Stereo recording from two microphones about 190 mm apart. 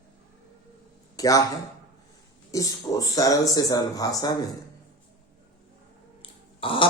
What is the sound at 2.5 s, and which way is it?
Speech, 15° left (ahead or behind).